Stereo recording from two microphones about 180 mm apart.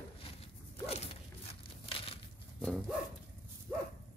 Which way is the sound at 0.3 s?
30° left (ahead or behind).